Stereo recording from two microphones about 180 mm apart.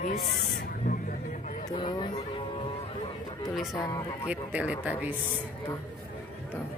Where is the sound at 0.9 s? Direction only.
50° left (ahead or behind).